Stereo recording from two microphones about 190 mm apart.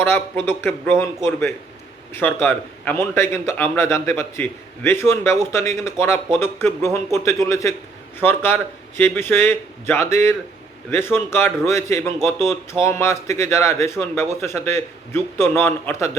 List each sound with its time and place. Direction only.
0.0 s a man's voice: 10° left (ahead or behind)